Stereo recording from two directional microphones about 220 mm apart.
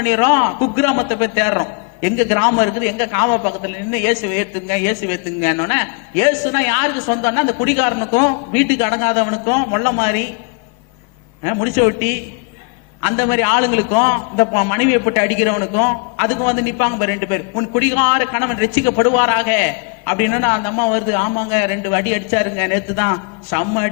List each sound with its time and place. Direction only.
0.0 s a man's voice: 15° left (ahead or behind)
11.4 s a man's voice: 15° left (ahead or behind)
13.0 s a man's voice: 15° left (ahead or behind)